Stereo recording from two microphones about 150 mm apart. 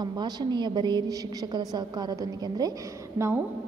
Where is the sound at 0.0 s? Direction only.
30° right (ahead or behind).